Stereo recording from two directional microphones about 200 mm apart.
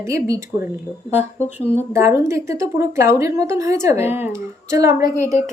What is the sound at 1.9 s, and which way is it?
A woman's voice, 15° right (ahead or behind).